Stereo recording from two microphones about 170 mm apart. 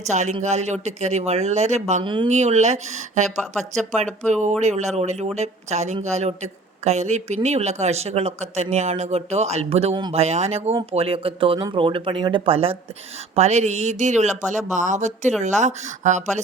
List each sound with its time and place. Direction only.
0.0 s speech: 45° right (ahead or behind)